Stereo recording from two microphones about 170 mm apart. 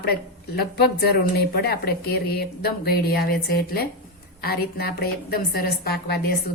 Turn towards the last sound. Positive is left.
turn(degrees=70)  # may be behind; listen again after turning